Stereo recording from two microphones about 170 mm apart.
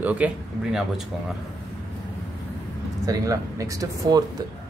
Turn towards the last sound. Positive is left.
turn(degrees=-20)  # may be behind; listen again after turning